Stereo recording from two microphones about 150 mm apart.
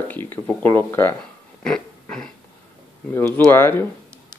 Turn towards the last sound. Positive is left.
turn(degrees=15)  # may be behind; listen again after turning